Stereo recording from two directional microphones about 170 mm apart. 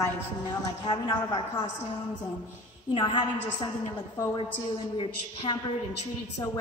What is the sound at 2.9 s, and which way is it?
Speech, 30° left (ahead or behind).